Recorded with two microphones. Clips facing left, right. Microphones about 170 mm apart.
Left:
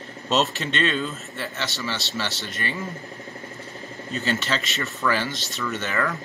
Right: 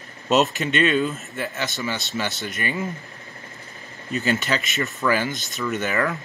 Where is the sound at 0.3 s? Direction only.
10° right (ahead or behind).